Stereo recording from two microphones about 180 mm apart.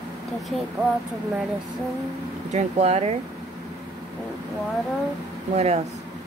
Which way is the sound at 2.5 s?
35° right (ahead or behind).